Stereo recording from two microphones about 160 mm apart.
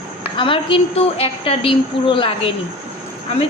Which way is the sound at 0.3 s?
30° left (ahead or behind).